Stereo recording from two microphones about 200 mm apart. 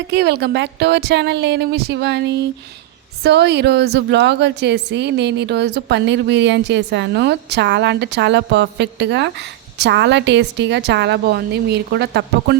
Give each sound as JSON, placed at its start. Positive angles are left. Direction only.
{"t": 0.1, "sound": "a woman's voice", "side_deg": -55}